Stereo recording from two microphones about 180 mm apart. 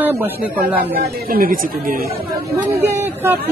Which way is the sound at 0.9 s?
55° right (ahead or behind).